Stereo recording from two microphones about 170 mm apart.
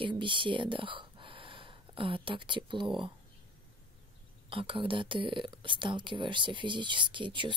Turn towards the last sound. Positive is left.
turn(degrees=-30)  # may be behind; listen again after turning